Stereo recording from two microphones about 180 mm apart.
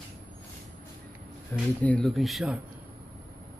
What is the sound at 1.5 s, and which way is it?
Speech, 10° left (ahead or behind).